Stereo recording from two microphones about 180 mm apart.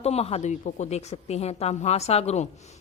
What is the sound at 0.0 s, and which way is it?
A woman's voice, 35° left (ahead or behind).